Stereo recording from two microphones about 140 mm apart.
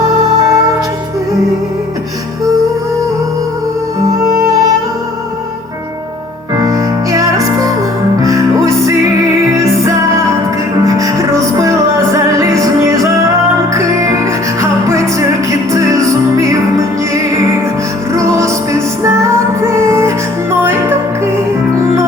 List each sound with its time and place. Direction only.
0.4 s music: 25° right (ahead or behind)
6.6 s music: 25° right (ahead or behind)
9.8 s music: 20° right (ahead or behind)
14.6 s music: 20° right (ahead or behind)
18.1 s music: 20° right (ahead or behind)
21.8 s music: 20° right (ahead or behind)